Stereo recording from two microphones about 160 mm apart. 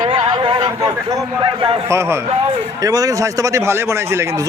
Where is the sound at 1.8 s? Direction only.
15° right (ahead or behind).